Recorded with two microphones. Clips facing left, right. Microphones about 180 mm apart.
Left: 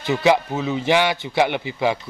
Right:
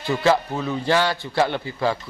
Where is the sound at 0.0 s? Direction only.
15° left (ahead or behind).